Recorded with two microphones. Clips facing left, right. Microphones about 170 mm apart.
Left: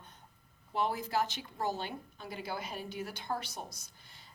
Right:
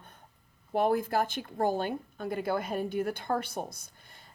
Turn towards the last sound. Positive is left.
turn(degrees=-55)  # may be behind; listen again after turning